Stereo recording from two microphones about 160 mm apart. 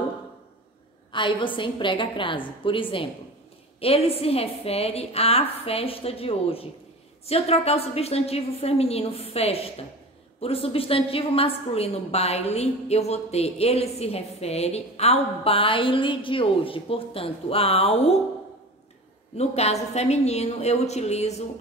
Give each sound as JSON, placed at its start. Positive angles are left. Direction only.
{"t": 1.1, "sound": "a woman's voice", "side_deg": 30}
{"t": 19.3, "sound": "a woman's voice", "side_deg": 40}